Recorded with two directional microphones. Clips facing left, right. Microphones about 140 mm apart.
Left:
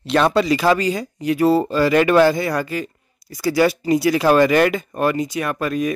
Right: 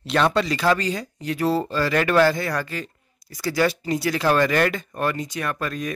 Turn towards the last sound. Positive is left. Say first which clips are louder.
# left 6 dB
turn(degrees=10)  # may be behind; listen again after turning